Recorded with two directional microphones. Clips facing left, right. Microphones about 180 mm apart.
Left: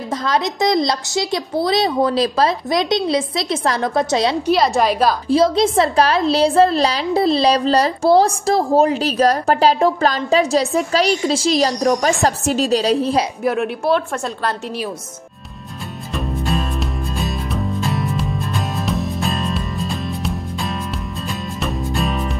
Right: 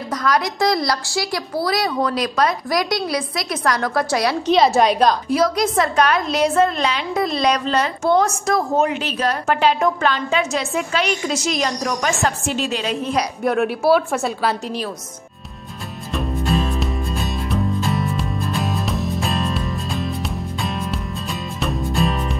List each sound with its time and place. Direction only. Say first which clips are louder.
0.1 s a woman's voice: even; 25° left (ahead or behind)
4.5 s a woman's voice: right 3 dB; centre (ahead or behind)
5.3 s a woman's voice: left 4 dB; 25° left (ahead or behind)
13.4 s a woman's voice: right 1 dB; centre (ahead or behind)
16.1 s music: right 1 dB; centre (ahead or behind)
21.5 s music: right 2 dB; centre (ahead or behind)